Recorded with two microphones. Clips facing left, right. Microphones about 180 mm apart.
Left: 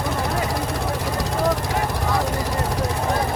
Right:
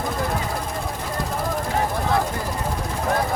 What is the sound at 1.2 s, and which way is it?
Vehicle, 75° left (ahead or behind).